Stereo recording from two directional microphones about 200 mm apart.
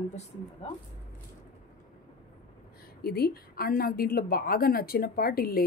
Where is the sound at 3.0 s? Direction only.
50° left (ahead or behind).